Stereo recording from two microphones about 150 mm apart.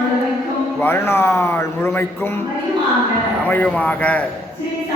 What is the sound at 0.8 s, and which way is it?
A man's voice, 15° left (ahead or behind).